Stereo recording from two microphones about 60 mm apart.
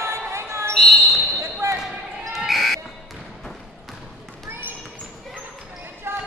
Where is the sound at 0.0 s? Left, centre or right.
Right.